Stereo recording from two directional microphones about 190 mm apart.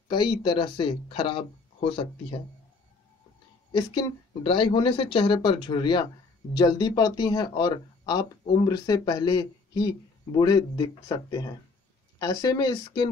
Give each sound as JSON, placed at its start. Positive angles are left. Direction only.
{"t": 0.1, "sound": "speech", "side_deg": 25}
{"t": 3.7, "sound": "speech", "side_deg": 25}